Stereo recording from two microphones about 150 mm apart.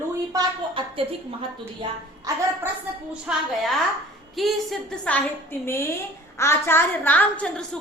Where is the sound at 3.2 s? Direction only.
Centre (ahead or behind).